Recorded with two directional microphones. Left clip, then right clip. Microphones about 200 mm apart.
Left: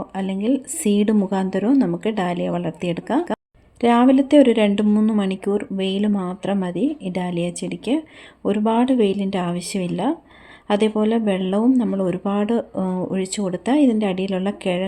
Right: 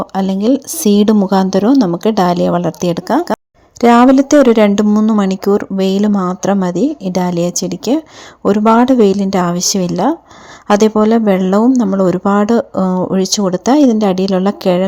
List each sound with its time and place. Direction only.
0.0 s speech: 30° right (ahead or behind)